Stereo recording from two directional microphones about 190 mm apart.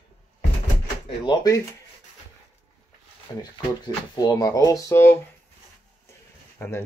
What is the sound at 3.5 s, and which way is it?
Speech, 20° left (ahead or behind).